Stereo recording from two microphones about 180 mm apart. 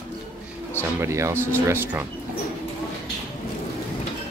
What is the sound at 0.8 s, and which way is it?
Speech, 15° right (ahead or behind).